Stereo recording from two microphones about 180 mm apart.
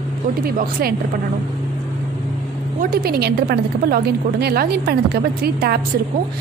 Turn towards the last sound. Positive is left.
turn(degrees=-60)  # may be behind; listen again after turning